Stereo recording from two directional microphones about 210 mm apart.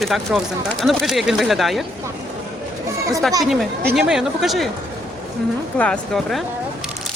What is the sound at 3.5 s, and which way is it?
Speech, centre (ahead or behind).